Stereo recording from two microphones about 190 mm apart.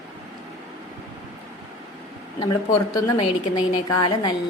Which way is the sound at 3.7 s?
25° left (ahead or behind).